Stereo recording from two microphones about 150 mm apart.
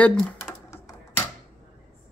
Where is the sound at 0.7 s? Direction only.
20° left (ahead or behind).